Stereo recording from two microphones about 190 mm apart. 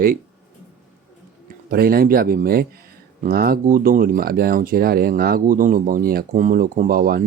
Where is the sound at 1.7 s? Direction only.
50° right (ahead or behind).